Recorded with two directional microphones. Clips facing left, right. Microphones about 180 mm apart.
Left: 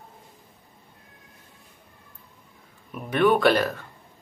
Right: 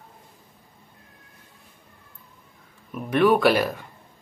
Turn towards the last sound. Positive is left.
turn(degrees=-10)  # may be behind; listen again after turning